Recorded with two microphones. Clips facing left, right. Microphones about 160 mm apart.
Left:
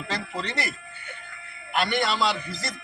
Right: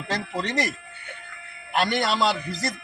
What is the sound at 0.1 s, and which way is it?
Speech, 45° right (ahead or behind).